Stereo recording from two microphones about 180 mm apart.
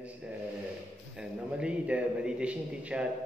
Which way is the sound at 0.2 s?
5° right (ahead or behind).